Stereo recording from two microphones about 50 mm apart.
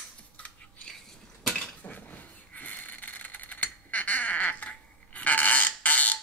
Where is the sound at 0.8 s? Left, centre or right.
Centre.